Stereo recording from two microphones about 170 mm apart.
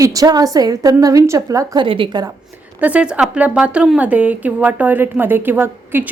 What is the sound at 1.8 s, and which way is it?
Speech, 30° right (ahead or behind).